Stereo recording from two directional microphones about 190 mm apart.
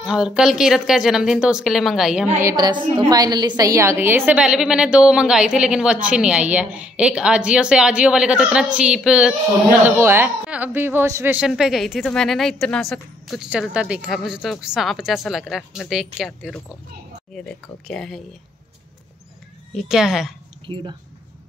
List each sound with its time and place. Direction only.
0.0 s a woman's voice: 5° right (ahead or behind)
2.4 s a woman's voice: 20° right (ahead or behind); by 18.2 s centre (ahead or behind)
19.7 s a woman's voice: centre (ahead or behind)
20.6 s speech: 25° right (ahead or behind)